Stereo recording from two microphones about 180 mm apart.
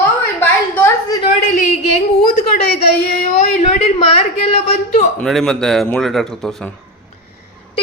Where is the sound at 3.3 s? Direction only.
40° left (ahead or behind).